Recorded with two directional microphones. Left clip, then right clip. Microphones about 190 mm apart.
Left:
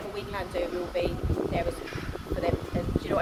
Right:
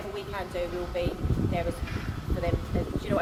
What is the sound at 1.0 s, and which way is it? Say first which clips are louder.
Speech: left 2 dB; 10° left (ahead or behind).